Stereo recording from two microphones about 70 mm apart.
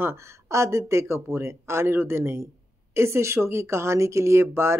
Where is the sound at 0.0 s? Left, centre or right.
Right.